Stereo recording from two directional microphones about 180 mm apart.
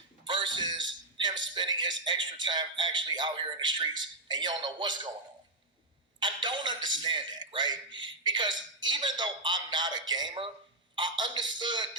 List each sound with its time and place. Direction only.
0.3 s a sound: 25° right (ahead or behind)
1.5 s a man's voice: 25° right (ahead or behind)
6.1 s a man's voice: 25° right (ahead or behind)